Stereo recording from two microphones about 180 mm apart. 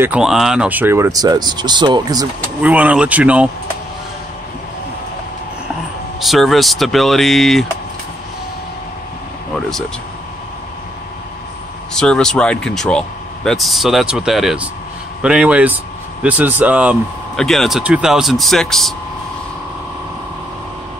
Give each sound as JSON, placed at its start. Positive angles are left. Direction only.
{"t": 0.0, "sound": "speech", "side_deg": -5}
{"t": 2.6, "sound": "speech", "side_deg": -10}
{"t": 6.2, "sound": "speech", "side_deg": 0}
{"t": 11.9, "sound": "speech", "side_deg": 5}